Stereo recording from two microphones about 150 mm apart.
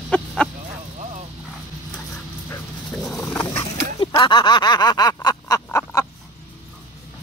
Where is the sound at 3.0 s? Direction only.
5° left (ahead or behind).